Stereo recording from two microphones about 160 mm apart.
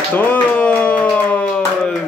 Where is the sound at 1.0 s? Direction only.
10° left (ahead or behind).